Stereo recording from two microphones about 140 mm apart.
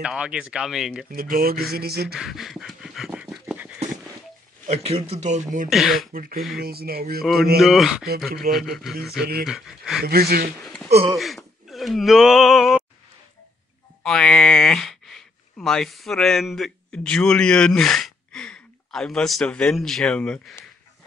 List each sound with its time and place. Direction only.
0.0 s speech: 5° right (ahead or behind)
1.1 s a sound: 90° right
2.1 s pant: centre (ahead or behind)
3.5 s dog: 10° right (ahead or behind)
4.6 s speech: 45° right (ahead or behind)
5.7 s speech: centre (ahead or behind)
6.1 s a sound: 90° right
7.6 s speech: centre (ahead or behind)
10.0 s a sound: 90° right
10.6 s a sound: 5° left (ahead or behind)
11.1 s wail: centre (ahead or behind)
14.0 s speech: 5° left (ahead or behind)